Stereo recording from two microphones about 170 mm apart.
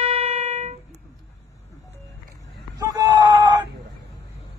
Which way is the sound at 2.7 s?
20° right (ahead or behind).